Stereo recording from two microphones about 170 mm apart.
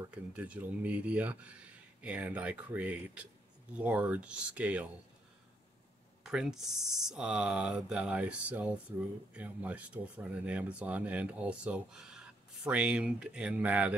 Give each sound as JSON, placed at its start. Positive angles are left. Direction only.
{"t": 0.0, "sound": "speech", "side_deg": -10}
{"t": 6.2, "sound": "speech", "side_deg": -5}